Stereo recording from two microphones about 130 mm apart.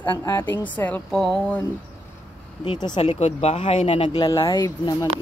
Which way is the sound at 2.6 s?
40° left (ahead or behind).